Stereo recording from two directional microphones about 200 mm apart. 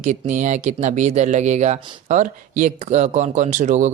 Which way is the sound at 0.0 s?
35° right (ahead or behind).